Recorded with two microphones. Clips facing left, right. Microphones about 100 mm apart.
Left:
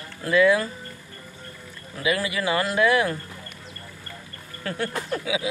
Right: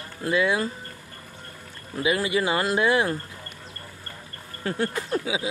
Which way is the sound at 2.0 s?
25° right (ahead or behind).